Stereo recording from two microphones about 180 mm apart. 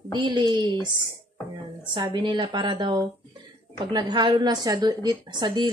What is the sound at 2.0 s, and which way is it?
A woman's voice, 25° right (ahead or behind).